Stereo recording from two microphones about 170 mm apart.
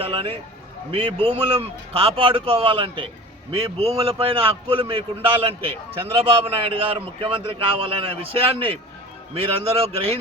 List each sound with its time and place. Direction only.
0.0 s a man's voice: 35° right (ahead or behind)